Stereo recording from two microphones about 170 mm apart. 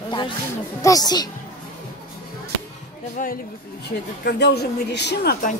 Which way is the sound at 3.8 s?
75° left (ahead or behind).